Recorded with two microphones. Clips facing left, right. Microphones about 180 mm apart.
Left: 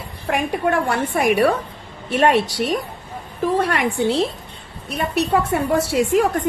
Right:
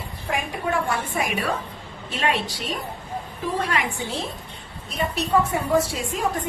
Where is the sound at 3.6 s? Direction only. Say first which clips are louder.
Left 7 dB; 60° left (ahead or behind).